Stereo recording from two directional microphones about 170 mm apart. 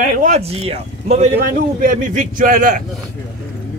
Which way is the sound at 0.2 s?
40° right (ahead or behind).